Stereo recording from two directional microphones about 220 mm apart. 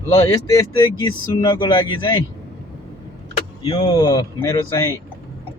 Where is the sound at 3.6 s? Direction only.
20° left (ahead or behind).